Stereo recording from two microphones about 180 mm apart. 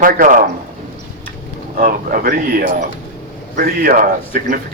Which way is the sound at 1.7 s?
55° right (ahead or behind).